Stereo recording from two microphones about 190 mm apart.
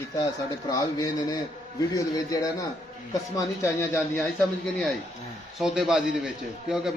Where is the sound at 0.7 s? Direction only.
20° left (ahead or behind).